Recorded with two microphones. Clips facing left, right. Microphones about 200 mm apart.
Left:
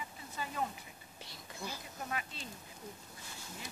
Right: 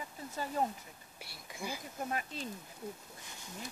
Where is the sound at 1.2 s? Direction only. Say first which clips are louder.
Right 2 dB; 10° right (ahead or behind).